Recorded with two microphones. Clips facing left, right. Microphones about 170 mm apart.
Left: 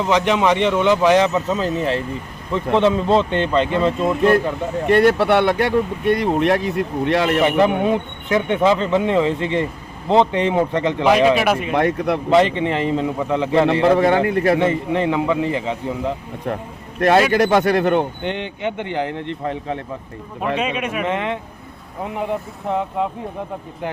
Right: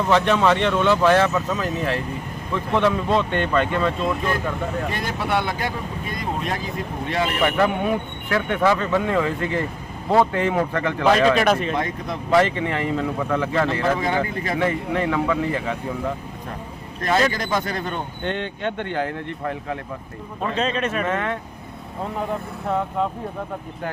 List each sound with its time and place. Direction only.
0.0 s speech: 15° left (ahead or behind)
4.0 s speech: 60° left (ahead or behind)
7.4 s speech: 20° left (ahead or behind)
11.7 s speech: 65° left (ahead or behind)
12.3 s speech: 20° left (ahead or behind)
13.9 s speech: 65° left (ahead or behind)
14.6 s speech: 20° left (ahead or behind)
17.3 s speech: 75° left (ahead or behind)
18.2 s speech: 15° left (ahead or behind)
20.6 s speech: 10° left (ahead or behind)